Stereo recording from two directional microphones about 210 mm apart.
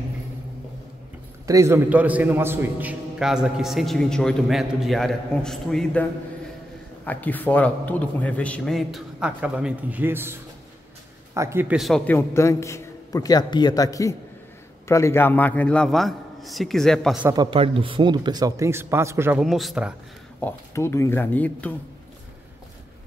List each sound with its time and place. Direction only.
1.5 s a man's voice: 15° right (ahead or behind); by 6.0 s centre (ahead or behind)
7.1 s a man's voice: 10° left (ahead or behind)
12.2 s a man's voice: 15° left (ahead or behind)
17.3 s speech: 20° right (ahead or behind)
19.4 s a man's voice: centre (ahead or behind)
20.3 s a man's voice: 10° left (ahead or behind)